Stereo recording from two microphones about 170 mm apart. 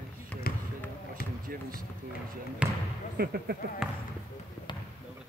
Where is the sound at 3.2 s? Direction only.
65° right (ahead or behind).